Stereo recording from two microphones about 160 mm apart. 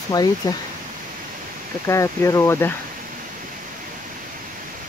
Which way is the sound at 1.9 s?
20° left (ahead or behind).